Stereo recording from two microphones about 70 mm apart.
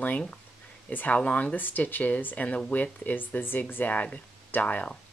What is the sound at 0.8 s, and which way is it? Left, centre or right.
Speech, left.